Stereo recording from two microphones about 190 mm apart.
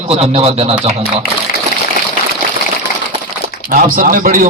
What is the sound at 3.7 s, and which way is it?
Speech, 45° right (ahead or behind).